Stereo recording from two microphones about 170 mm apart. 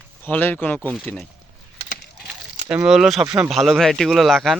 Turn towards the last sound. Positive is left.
turn(degrees=0)  # may be behind; listen again after turning